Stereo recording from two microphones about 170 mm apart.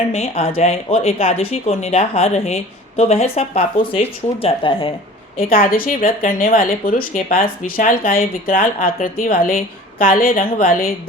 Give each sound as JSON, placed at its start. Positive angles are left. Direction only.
{"t": 0.1, "sound": "speech", "side_deg": 35}
{"t": 5.5, "sound": "speech", "side_deg": 60}